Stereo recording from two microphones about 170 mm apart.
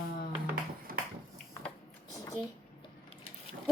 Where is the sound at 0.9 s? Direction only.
60° right (ahead or behind).